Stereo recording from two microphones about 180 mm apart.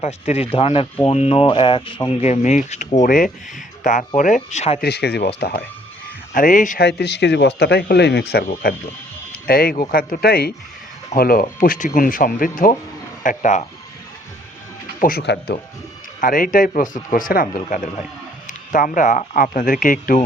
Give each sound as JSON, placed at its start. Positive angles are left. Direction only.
{"t": 0.0, "sound": "speech", "side_deg": 35}
{"t": 4.8, "sound": "speech", "side_deg": 65}
{"t": 6.3, "sound": "speech", "side_deg": 50}
{"t": 6.8, "sound": "speech", "side_deg": 70}
{"t": 15.0, "sound": "speech", "side_deg": 60}
{"t": 16.2, "sound": "speech", "side_deg": 50}